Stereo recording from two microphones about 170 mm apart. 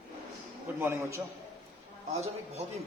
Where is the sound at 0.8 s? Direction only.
15° right (ahead or behind).